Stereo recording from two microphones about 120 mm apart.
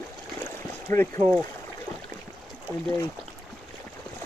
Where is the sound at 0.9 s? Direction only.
15° left (ahead or behind).